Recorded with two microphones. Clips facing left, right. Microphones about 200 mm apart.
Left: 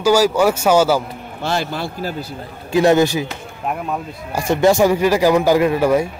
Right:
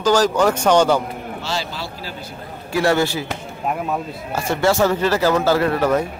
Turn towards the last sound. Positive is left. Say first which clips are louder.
# left 3 dB
turn(degrees=10)  # may be behind; listen again after turning